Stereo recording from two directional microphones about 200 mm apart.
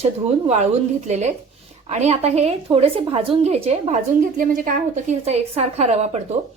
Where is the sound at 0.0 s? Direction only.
30° right (ahead or behind).